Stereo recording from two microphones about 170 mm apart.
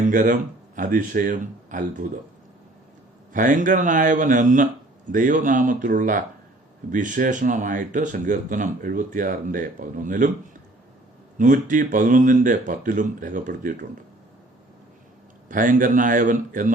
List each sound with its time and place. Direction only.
0.0 s speech: 50° right (ahead or behind)
3.3 s speech: 50° right (ahead or behind)
11.3 s speech: 50° right (ahead or behind)
15.4 s speech: 50° right (ahead or behind)